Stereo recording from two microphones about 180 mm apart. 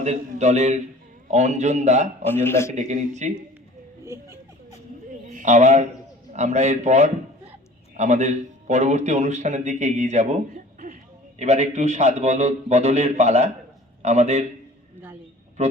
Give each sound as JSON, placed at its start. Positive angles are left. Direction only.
{"t": 0.0, "sound": "a man's voice", "side_deg": -40}
{"t": 2.2, "sound": "speech", "side_deg": 10}
{"t": 2.7, "sound": "a man's voice", "side_deg": -40}
{"t": 4.0, "sound": "speech", "side_deg": -15}
{"t": 5.2, "sound": "a sound", "side_deg": -45}
{"t": 6.3, "sound": "a man's voice", "side_deg": -40}